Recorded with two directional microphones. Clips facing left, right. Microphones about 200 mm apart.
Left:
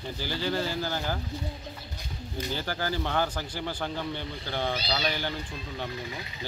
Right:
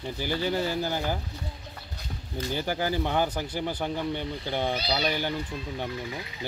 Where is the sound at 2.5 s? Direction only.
15° right (ahead or behind).